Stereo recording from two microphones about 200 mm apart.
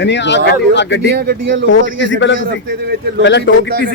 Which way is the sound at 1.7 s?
65° left (ahead or behind).